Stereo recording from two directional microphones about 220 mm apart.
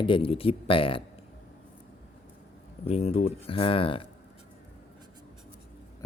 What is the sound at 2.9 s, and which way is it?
Speech, 25° left (ahead or behind).